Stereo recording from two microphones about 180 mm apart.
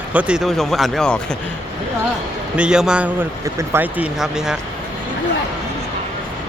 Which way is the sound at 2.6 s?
5° right (ahead or behind).